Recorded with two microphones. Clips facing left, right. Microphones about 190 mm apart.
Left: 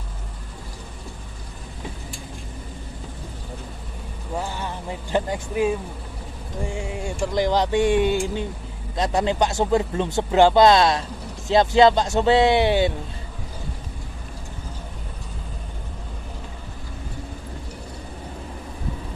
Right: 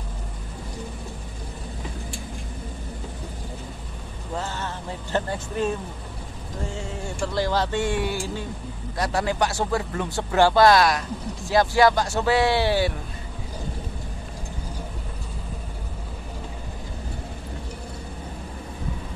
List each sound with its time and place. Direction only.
4.4 s music: 10° left (ahead or behind)
6.6 s speech: 15° left (ahead or behind)